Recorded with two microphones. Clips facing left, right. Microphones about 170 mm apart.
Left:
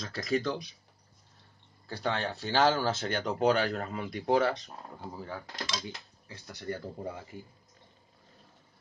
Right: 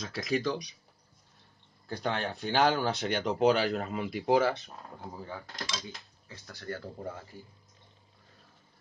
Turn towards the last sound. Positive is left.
turn(degrees=15)  # may be behind; listen again after turning